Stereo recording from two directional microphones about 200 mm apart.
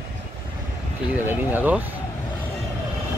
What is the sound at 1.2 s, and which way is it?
Speech, 10° right (ahead or behind).